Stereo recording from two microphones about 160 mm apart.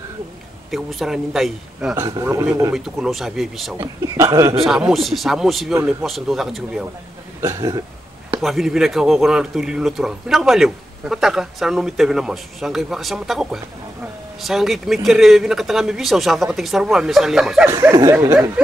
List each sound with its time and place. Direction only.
0.7 s speech: centre (ahead or behind)
2.0 s speech: 20° right (ahead or behind)
2.7 s speech: centre (ahead or behind)
3.8 s speech: 25° right (ahead or behind)
4.6 s speech: 5° right (ahead or behind)
7.4 s speech: 25° right (ahead or behind)
8.4 s speech: centre (ahead or behind)
17.9 s speech: 20° right (ahead or behind)